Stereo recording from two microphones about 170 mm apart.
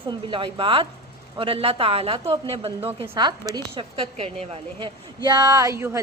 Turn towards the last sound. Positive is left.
turn(degrees=-15)  # may be behind; listen again after turning